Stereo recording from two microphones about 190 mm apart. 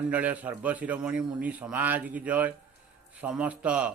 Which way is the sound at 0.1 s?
10° right (ahead or behind).